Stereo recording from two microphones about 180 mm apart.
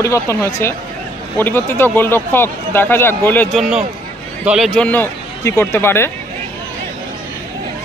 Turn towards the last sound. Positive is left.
turn(degrees=15)  # may be behind; listen again after turning